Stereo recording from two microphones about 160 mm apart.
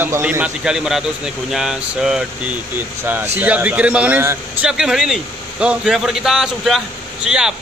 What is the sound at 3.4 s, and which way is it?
Speech, 10° right (ahead or behind).